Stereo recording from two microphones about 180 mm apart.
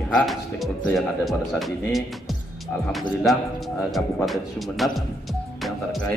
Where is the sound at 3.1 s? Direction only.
Centre (ahead or behind).